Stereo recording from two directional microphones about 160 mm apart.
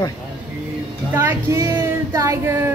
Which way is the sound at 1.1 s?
15° right (ahead or behind).